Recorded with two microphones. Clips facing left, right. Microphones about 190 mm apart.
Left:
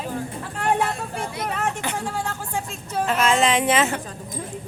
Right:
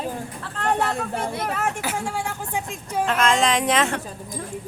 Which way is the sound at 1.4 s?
5° right (ahead or behind).